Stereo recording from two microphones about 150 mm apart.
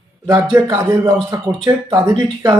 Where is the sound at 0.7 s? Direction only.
30° right (ahead or behind).